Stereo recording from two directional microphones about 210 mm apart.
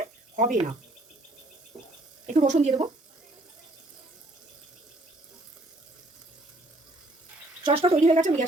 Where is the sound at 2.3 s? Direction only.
35° right (ahead or behind).